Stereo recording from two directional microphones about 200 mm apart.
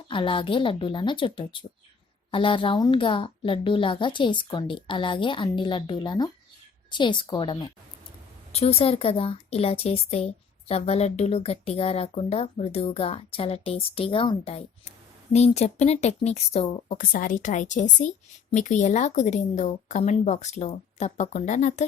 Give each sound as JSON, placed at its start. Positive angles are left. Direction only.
{"t": 0.1, "sound": "a woman's voice", "side_deg": 25}